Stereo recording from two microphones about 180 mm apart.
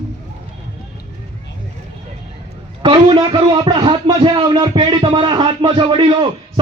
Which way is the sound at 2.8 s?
30° right (ahead or behind).